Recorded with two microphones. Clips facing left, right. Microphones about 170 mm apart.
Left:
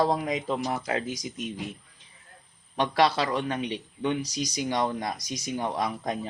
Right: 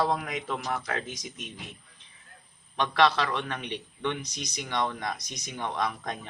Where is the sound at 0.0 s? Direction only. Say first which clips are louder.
Left 3 dB; 35° left (ahead or behind).